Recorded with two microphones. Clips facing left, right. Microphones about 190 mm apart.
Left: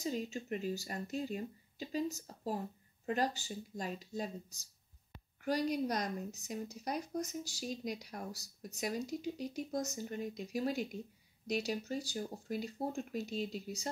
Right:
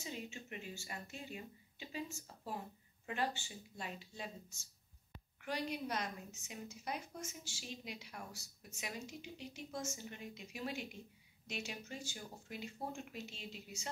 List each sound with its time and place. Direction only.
0.0 s a woman's voice: 40° left (ahead or behind)